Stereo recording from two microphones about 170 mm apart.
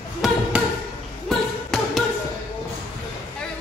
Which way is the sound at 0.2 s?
Centre (ahead or behind).